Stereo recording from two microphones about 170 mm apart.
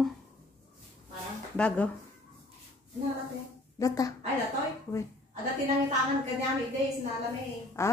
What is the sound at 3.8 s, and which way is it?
Speech, 20° left (ahead or behind).